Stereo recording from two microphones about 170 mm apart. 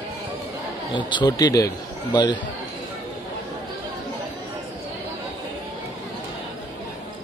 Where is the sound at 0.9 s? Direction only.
25° left (ahead or behind).